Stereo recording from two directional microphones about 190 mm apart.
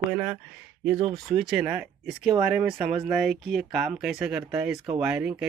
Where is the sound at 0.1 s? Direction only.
5° right (ahead or behind).